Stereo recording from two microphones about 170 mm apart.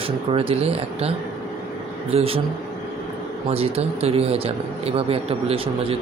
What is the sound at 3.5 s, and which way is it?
Speech, 35° right (ahead or behind).